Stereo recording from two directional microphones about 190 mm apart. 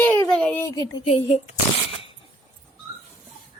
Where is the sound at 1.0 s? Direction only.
35° left (ahead or behind).